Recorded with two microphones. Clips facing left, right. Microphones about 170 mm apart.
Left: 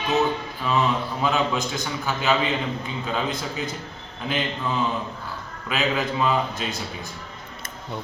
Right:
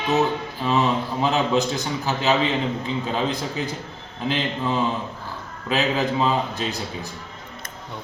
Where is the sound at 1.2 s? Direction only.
35° right (ahead or behind).